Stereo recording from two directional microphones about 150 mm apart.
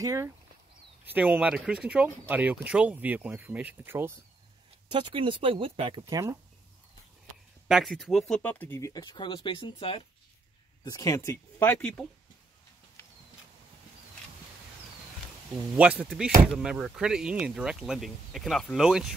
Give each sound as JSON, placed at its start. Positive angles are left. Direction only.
{"t": 0.0, "sound": "speech", "side_deg": -20}
{"t": 1.0, "sound": "speech", "side_deg": -10}
{"t": 4.9, "sound": "speech", "side_deg": -35}
{"t": 7.6, "sound": "speech", "side_deg": 0}
{"t": 10.8, "sound": "speech", "side_deg": 20}
{"t": 15.7, "sound": "speech", "side_deg": -10}